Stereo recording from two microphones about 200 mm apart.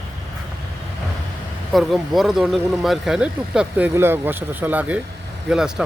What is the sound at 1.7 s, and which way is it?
Speech, centre (ahead or behind).